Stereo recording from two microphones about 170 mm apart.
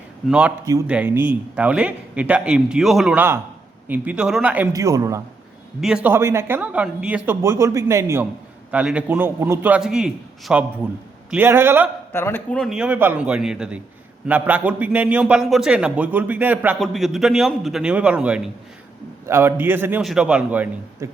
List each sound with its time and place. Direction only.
0.3 s a man's voice: 5° right (ahead or behind)
0.6 s a man's voice: 20° right (ahead or behind)
4.7 s a man's voice: 20° right (ahead or behind)
5.8 s speech: 5° right (ahead or behind)
12.1 s a man's voice: 15° left (ahead or behind); by 21.1 s 10° right (ahead or behind)